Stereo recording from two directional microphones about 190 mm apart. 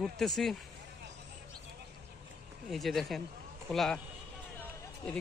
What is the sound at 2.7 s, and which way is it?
Speech, centre (ahead or behind).